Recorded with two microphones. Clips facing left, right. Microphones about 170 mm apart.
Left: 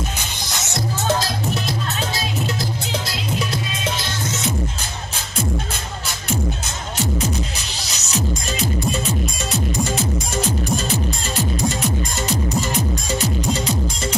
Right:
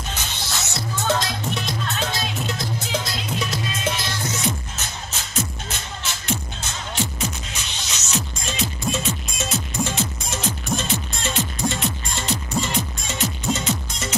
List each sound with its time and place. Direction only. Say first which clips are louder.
1.0 s music: left 1 dB; 5° left (ahead or behind)
7.5 s music: left 2 dB; 35° left (ahead or behind)
13.2 s music: right 1 dB; 35° left (ahead or behind)